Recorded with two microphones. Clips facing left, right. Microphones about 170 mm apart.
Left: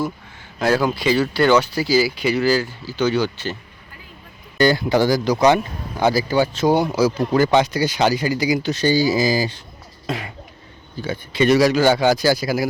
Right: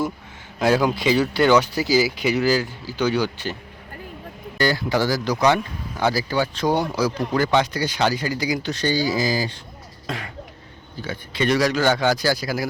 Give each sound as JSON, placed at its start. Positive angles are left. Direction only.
{"t": 0.6, "sound": "speech", "side_deg": -15}
{"t": 4.5, "sound": "speech", "side_deg": 20}
{"t": 11.3, "sound": "speech", "side_deg": 10}